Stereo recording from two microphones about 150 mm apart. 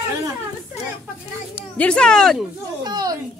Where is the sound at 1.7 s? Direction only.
5° left (ahead or behind).